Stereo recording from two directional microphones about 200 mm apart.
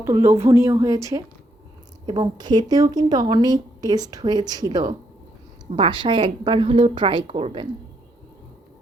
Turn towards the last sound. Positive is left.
turn(degrees=-25)  # may be behind; listen again after turning